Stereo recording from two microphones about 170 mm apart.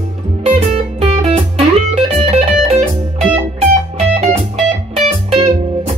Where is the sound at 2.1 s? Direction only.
35° right (ahead or behind).